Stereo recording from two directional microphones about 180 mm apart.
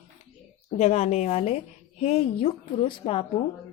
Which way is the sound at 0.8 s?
40° left (ahead or behind).